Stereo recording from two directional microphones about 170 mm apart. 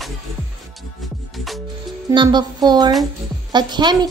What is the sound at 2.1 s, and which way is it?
A woman's voice, 30° right (ahead or behind).